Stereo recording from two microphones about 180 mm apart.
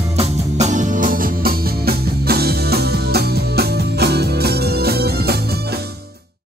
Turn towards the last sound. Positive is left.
turn(degrees=-60)  # may be behind; listen again after turning